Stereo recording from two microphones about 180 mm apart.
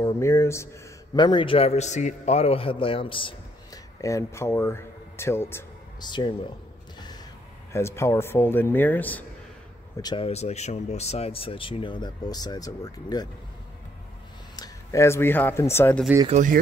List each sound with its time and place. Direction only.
0.0 s a man's voice: 15° left (ahead or behind)
7.7 s speech: 15° left (ahead or behind)
10.0 s speech: 30° left (ahead or behind)
14.5 s speech: 20° left (ahead or behind)
16.3 s speech: 45° right (ahead or behind)